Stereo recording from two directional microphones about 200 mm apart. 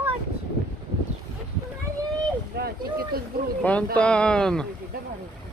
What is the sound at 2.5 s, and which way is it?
Speech, 50° right (ahead or behind).